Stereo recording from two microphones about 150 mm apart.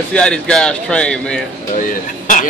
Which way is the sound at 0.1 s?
5° left (ahead or behind).